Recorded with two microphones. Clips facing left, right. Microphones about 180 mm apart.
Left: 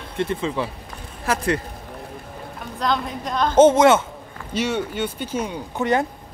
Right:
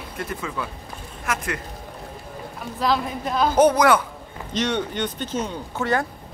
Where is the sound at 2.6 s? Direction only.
5° right (ahead or behind).